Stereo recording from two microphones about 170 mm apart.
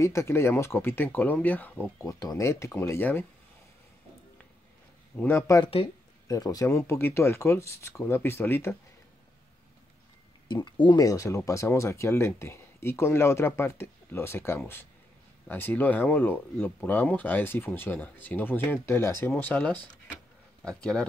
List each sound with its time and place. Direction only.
0.0 s speech: 15° left (ahead or behind)
5.1 s speech: 10° left (ahead or behind)
10.5 s speech: 25° left (ahead or behind); by 21.0 s 5° left (ahead or behind)